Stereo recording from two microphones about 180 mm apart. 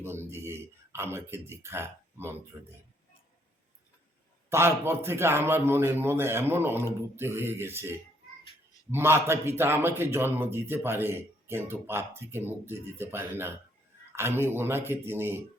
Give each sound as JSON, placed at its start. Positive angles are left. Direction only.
{"t": 0.0, "sound": "speech", "side_deg": -15}
{"t": 4.4, "sound": "speech", "side_deg": -15}